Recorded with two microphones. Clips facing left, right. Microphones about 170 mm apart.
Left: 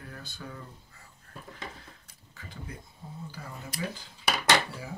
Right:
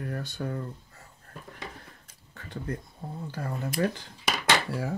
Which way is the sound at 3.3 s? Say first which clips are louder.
Right 13 dB; 60° right (ahead or behind).